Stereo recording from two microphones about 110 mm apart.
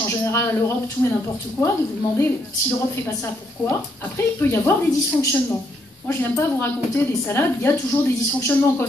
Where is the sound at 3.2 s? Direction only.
25° left (ahead or behind).